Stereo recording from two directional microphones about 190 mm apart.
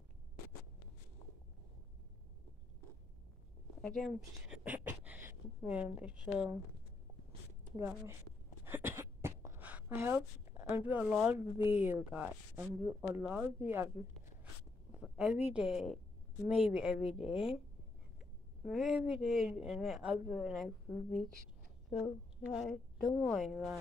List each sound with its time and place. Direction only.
3.8 s speech: centre (ahead or behind)
4.6 s a woman's voice: 10° right (ahead or behind)
8.6 s speech: 10° right (ahead or behind)
15.0 s speech: 5° right (ahead or behind)
18.6 s speech: centre (ahead or behind)
22.6 s a woman's voice: centre (ahead or behind)